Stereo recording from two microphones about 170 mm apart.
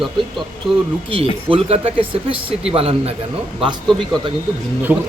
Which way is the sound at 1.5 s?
35° right (ahead or behind).